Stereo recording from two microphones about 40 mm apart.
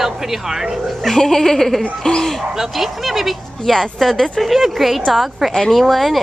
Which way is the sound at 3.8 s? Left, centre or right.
Centre.